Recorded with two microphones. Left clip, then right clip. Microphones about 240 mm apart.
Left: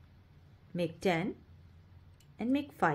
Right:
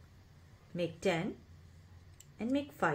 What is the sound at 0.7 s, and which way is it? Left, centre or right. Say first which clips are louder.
Speech: left 2 dB; left.